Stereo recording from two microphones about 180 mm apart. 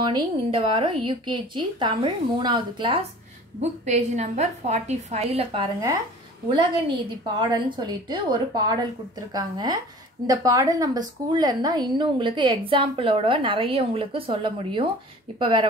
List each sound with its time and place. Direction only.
0.0 s a woman's voice: 25° right (ahead or behind)
3.8 s a woman's voice: 40° right (ahead or behind); by 5.9 s 25° right (ahead or behind)
7.3 s a woman's voice: 25° right (ahead or behind)